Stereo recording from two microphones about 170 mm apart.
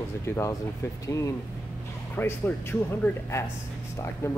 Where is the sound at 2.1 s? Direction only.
10° left (ahead or behind).